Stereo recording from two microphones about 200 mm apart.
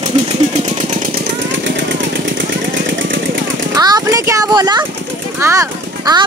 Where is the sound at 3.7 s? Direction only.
20° right (ahead or behind).